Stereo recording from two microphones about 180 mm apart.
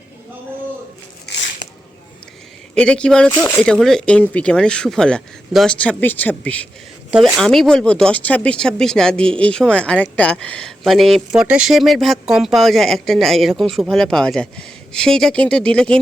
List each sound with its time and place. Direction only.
1.3 s a sound: 65° left (ahead or behind)
2.7 s speech: 5° left (ahead or behind)
7.1 s speech: 5° right (ahead or behind)